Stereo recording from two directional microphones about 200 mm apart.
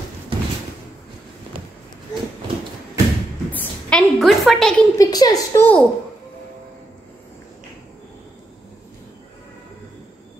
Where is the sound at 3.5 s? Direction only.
5° left (ahead or behind).